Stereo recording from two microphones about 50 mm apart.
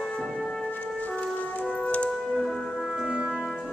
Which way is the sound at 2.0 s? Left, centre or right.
Centre.